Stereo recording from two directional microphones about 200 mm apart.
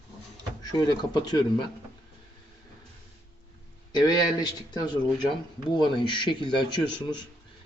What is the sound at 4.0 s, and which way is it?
A man's voice, 20° left (ahead or behind).